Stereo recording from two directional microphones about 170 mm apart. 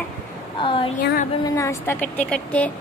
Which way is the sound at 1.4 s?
15° left (ahead or behind).